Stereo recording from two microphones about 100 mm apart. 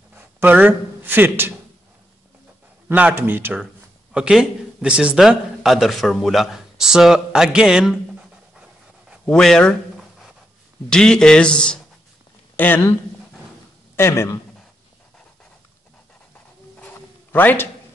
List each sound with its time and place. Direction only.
0.1 s speech: 20° right (ahead or behind)
2.9 s a man's voice: 15° right (ahead or behind)
4.1 s speech: 10° right (ahead or behind)
9.3 s a sound: 5° left (ahead or behind)
10.9 s speech: 5° left (ahead or behind)
12.5 s speech: 20° left (ahead or behind)
13.9 s speech: 25° left (ahead or behind)
16.8 s zipper: 15° left (ahead or behind)